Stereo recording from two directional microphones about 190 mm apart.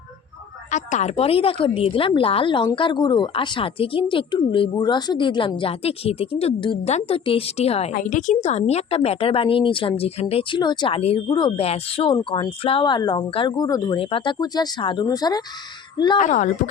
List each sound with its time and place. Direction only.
0.7 s a woman's voice: 40° left (ahead or behind); by 15.4 s 20° left (ahead or behind)
16.1 s speech: 40° left (ahead or behind)